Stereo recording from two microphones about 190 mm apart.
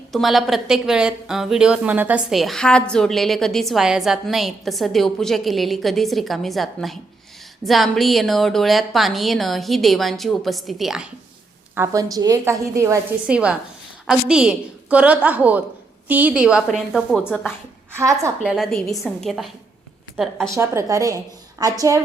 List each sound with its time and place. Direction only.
0.1 s a woman's voice: centre (ahead or behind)
11.7 s a woman's voice: 15° right (ahead or behind); by 17.5 s centre (ahead or behind)
17.9 s a woman's voice: 15° right (ahead or behind)
18.5 s a woman's voice: centre (ahead or behind)
20.5 s a woman's voice: 15° right (ahead or behind)